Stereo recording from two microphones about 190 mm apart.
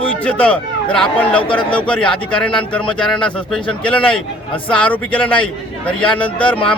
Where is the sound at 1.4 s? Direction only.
25° left (ahead or behind).